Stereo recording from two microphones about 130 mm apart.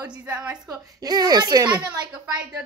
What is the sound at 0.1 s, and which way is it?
Speech, 10° right (ahead or behind).